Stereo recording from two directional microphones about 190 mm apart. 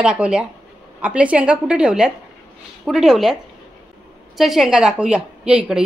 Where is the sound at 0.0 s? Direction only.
5° right (ahead or behind).